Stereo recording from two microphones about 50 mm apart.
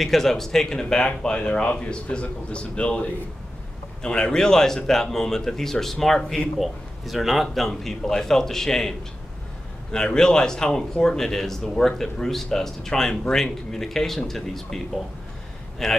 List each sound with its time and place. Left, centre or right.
0.0 s speech: centre
15.8 s speech: centre